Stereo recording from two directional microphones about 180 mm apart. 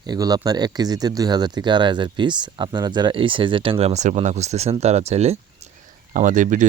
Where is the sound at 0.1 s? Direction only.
20° right (ahead or behind).